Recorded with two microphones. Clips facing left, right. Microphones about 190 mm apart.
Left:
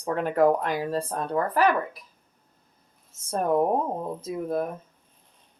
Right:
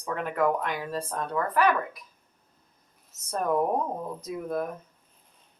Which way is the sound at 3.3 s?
25° left (ahead or behind).